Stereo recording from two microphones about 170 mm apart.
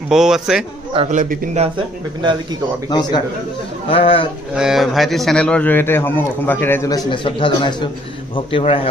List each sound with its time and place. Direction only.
0.1 s a man's voice: 5° right (ahead or behind)
0.9 s a man's voice: 45° right (ahead or behind)
2.9 s a man's voice: 25° left (ahead or behind)
4.6 s a man's voice: centre (ahead or behind); by 8.7 s 30° left (ahead or behind)